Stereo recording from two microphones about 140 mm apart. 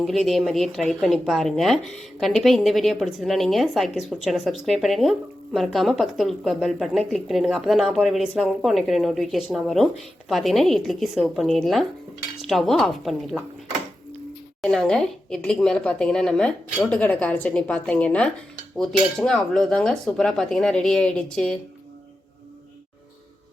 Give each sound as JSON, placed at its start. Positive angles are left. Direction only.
{"t": 0.0, "sound": "a woman's voice", "side_deg": 0}
{"t": 14.6, "sound": "a woman's voice", "side_deg": 5}